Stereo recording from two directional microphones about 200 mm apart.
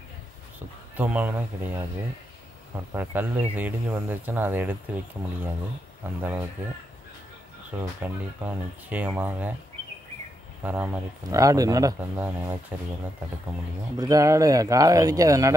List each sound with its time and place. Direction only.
0.9 s speech: 10° right (ahead or behind)
2.9 s speech: 10° right (ahead or behind)
8.0 s speech: 10° right (ahead or behind)
10.6 s speech: 10° right (ahead or behind)
13.9 s speech: 20° right (ahead or behind)